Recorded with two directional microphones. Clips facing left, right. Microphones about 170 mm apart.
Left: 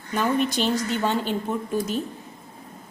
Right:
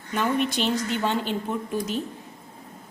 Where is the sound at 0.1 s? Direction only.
40° left (ahead or behind).